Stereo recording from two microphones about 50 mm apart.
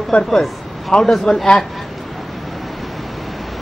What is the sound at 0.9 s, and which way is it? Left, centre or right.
Speech, centre.